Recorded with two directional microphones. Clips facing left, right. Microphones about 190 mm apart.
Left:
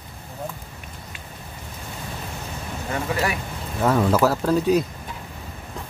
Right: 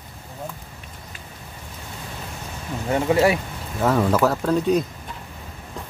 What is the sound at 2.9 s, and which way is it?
Speech, 25° right (ahead or behind).